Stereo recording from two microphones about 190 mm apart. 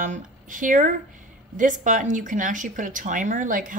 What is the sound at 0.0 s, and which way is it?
A woman's voice, 40° right (ahead or behind).